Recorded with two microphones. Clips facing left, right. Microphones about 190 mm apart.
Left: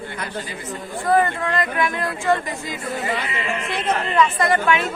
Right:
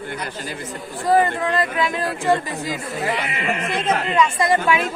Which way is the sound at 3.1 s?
60° right (ahead or behind).